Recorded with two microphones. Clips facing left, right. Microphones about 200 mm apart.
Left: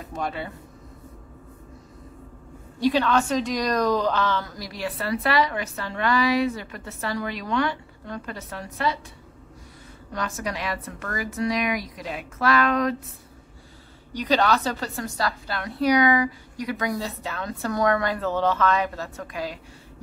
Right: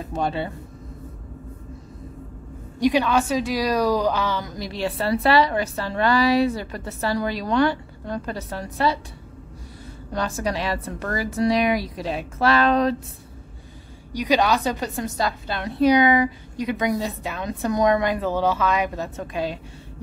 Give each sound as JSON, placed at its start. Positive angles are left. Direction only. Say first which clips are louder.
{"t": 0.1, "sound": "speech", "louder": "right 5 dB", "side_deg": -30}
{"t": 2.8, "sound": "a woman's voice", "louder": "right 2 dB", "side_deg": -15}
{"t": 10.1, "sound": "a woman's voice", "louder": "right 4 dB", "side_deg": -30}
{"t": 14.1, "sound": "a woman's voice", "louder": "right 2 dB", "side_deg": -10}